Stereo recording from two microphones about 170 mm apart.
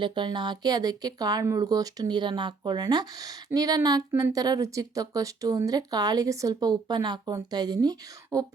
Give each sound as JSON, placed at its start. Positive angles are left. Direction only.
{"t": 0.0, "sound": "speech", "side_deg": -30}